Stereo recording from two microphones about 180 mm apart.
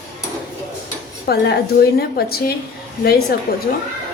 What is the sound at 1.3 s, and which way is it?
Speech, 60° left (ahead or behind).